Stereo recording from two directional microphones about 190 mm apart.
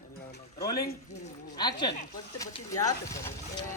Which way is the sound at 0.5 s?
20° left (ahead or behind).